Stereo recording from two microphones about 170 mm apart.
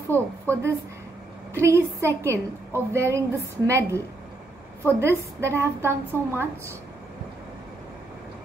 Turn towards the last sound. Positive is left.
turn(degrees=-15)  # may be behind; listen again after turning